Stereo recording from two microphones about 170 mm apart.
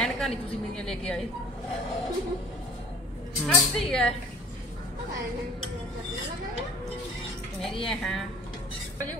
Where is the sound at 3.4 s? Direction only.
5° left (ahead or behind).